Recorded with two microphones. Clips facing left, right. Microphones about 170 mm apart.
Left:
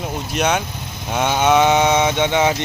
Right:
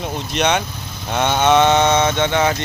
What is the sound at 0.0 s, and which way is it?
Speech, 5° left (ahead or behind).